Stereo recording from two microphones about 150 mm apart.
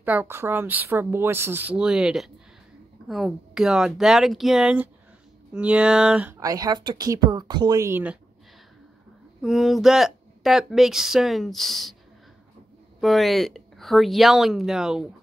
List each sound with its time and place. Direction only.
0.0 s speech: 10° right (ahead or behind)
6.4 s speech: 25° right (ahead or behind)
9.4 s speech: centre (ahead or behind)
13.0 s speech: centre (ahead or behind)